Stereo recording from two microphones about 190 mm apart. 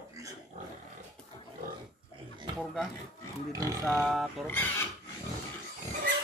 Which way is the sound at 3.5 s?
20° right (ahead or behind).